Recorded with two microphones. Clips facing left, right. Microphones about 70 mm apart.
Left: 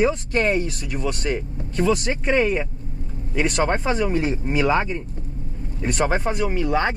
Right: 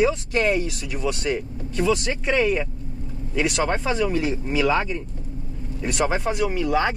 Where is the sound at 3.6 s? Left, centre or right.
Left.